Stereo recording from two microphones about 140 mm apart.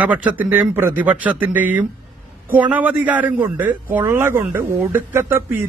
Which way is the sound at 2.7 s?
10° right (ahead or behind).